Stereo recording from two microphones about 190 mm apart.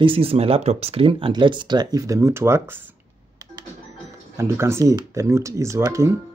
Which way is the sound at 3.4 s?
20° right (ahead or behind).